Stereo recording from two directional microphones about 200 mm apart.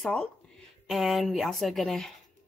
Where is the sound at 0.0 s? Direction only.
5° left (ahead or behind).